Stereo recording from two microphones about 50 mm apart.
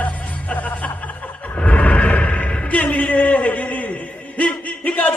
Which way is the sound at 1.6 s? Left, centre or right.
Left.